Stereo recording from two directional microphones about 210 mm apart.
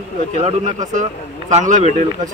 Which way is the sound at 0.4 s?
30° right (ahead or behind).